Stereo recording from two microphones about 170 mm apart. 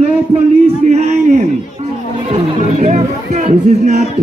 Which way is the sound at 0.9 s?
40° right (ahead or behind).